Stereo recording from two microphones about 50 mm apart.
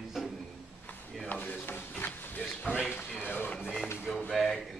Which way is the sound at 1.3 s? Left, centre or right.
Left.